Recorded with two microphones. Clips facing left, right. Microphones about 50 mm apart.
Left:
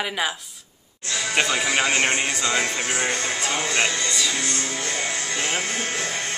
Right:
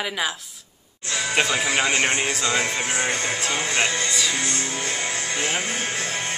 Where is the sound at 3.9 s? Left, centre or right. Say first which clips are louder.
Right 1 dB; centre.